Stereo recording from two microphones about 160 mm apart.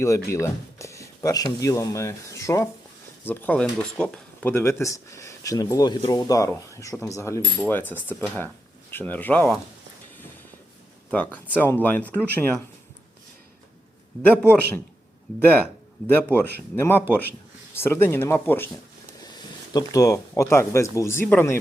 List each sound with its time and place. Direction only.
0.0 s speech: 20° left (ahead or behind)
11.1 s speech: 10° left (ahead or behind)
16.0 s speech: 10° left (ahead or behind)
19.7 s speech: 20° left (ahead or behind)